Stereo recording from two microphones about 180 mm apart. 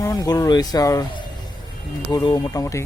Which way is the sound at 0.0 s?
20° left (ahead or behind).